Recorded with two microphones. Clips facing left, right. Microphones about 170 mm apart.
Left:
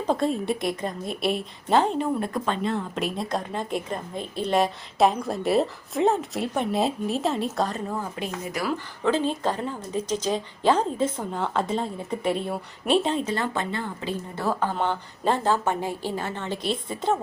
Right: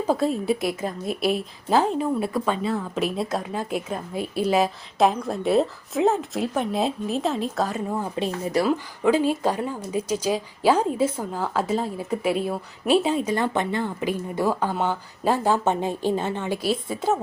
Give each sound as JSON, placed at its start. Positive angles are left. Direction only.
{"t": 0.1, "sound": "a woman's voice", "side_deg": -5}
{"t": 8.1, "sound": "speech", "side_deg": -30}
{"t": 9.0, "sound": "speech", "side_deg": -10}
{"t": 15.5, "sound": "speech", "side_deg": -20}